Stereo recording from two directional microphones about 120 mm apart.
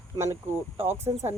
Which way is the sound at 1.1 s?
35° right (ahead or behind).